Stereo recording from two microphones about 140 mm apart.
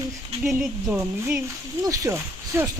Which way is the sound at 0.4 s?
Centre (ahead or behind).